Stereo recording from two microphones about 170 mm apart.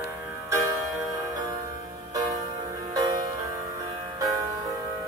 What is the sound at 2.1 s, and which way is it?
Music, 20° right (ahead or behind).